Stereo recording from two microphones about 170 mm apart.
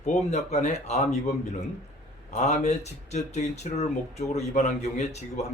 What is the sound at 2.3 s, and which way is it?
A man's voice, 45° left (ahead or behind).